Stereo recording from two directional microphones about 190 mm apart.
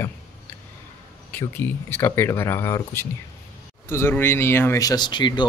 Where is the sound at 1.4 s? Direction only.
10° left (ahead or behind).